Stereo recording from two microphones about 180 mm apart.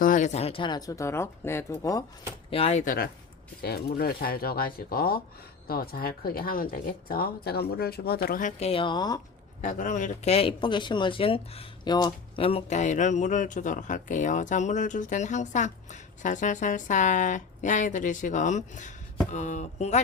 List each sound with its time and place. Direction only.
0.0 s speech: 45° left (ahead or behind); by 2.0 s 20° left (ahead or behind)
2.5 s speech: 35° left (ahead or behind)
2.8 s speech: 50° left (ahead or behind); by 9.2 s 20° left (ahead or behind)
9.6 s speech: 45° left (ahead or behind)